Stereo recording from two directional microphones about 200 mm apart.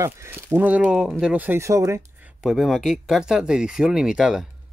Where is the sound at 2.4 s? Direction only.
Centre (ahead or behind).